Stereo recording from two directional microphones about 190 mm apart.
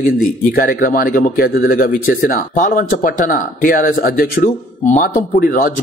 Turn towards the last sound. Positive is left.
turn(degrees=50)  # may be behind; listen again after turning